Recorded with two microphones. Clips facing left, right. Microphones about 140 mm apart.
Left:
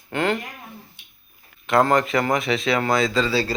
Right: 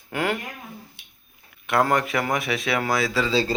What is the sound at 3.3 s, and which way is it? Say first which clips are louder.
Speech: even; 25° right (ahead or behind).